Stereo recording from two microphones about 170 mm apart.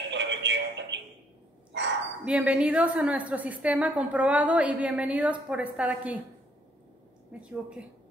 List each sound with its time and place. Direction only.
0.1 s music: 90° right
1.7 s dog: 90° right
2.2 s a woman's voice: 5° right (ahead or behind)
7.3 s a woman's voice: 5° right (ahead or behind)